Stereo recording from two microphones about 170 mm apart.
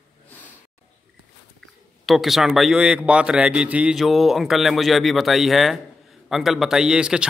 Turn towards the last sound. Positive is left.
turn(degrees=-5)  # may be behind; listen again after turning